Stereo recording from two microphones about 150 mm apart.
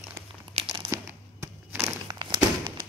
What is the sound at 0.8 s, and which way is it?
Crumpling, 15° right (ahead or behind).